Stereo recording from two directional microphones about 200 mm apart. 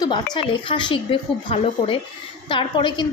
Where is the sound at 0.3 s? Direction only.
25° left (ahead or behind).